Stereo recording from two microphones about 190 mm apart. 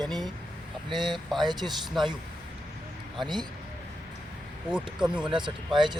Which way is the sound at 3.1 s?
25° right (ahead or behind).